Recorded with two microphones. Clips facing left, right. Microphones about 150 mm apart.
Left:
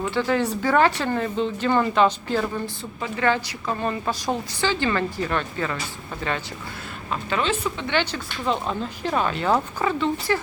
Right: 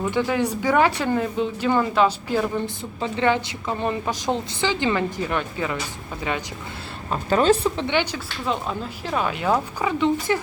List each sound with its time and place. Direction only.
0.0 s a woman's voice: 15° right (ahead or behind)
3.0 s a woman's voice: 20° right (ahead or behind)
7.1 s a woman's voice: 40° right (ahead or behind)
7.9 s a woman's voice: 15° right (ahead or behind)
8.4 s a woman's voice: centre (ahead or behind)